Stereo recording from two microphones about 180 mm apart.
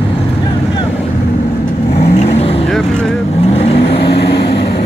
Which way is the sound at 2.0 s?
35° left (ahead or behind).